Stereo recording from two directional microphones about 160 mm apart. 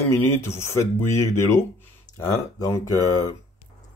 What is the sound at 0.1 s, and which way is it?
Speech, 15° left (ahead or behind).